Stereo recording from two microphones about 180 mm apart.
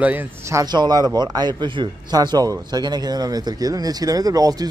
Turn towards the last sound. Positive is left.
turn(degrees=-20)  # may be behind; listen again after turning